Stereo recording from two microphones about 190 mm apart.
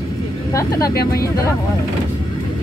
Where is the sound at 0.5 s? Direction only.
20° left (ahead or behind).